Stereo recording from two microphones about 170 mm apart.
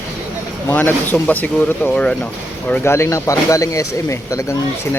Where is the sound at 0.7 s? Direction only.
10° left (ahead or behind).